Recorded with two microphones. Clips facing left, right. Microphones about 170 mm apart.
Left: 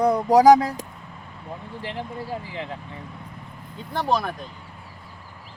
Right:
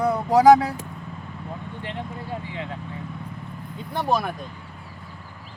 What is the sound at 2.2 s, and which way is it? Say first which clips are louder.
Speech: left 1 dB; 35° left (ahead or behind).